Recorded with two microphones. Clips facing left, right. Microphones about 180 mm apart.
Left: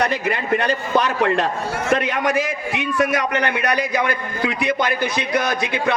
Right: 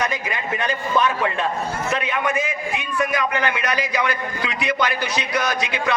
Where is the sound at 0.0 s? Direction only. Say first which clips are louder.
Left 4 dB; 65° left (ahead or behind).